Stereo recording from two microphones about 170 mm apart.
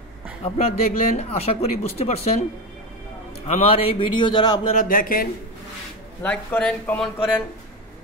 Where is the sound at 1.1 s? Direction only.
40° left (ahead or behind).